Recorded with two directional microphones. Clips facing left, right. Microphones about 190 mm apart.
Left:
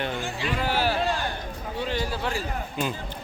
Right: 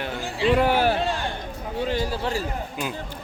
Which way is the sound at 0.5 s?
55° right (ahead or behind).